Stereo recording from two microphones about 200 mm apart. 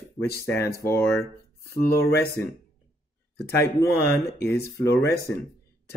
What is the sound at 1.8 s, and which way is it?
Speech, 50° left (ahead or behind).